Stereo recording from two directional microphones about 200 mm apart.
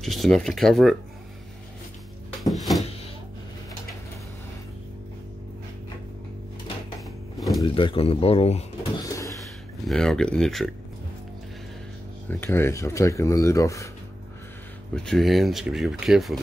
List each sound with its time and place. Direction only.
0.0 s speech: centre (ahead or behind)
2.4 s cupboard open or close: centre (ahead or behind)
7.3 s a sound: centre (ahead or behind)
7.6 s speech: 25° left (ahead or behind)
9.0 s a sound: 15° left (ahead or behind)
9.8 s speech: centre (ahead or behind)
12.3 s speech: 10° left (ahead or behind)
15.0 s speech: centre (ahead or behind)